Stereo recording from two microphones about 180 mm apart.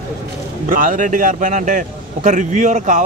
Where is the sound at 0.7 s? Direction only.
45° right (ahead or behind).